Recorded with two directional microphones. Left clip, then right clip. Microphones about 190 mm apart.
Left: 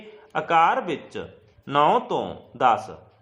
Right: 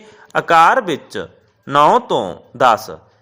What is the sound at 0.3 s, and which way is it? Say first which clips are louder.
A man's voice: right 9 dB; 25° right (ahead or behind).